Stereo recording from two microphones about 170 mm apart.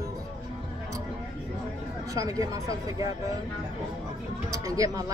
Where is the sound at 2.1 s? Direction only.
20° right (ahead or behind).